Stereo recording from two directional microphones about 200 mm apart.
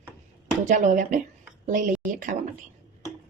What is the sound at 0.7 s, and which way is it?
A woman's voice, 40° right (ahead or behind).